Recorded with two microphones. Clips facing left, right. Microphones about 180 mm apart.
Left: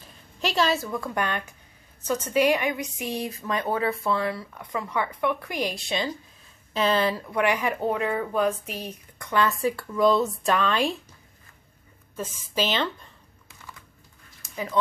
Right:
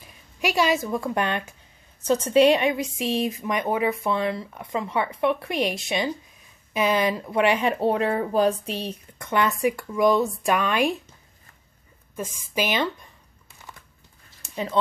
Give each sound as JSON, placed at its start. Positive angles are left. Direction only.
{"t": 0.0, "sound": "speech", "side_deg": -10}
{"t": 12.2, "sound": "a woman's voice", "side_deg": -10}
{"t": 14.4, "sound": "a sound", "side_deg": -30}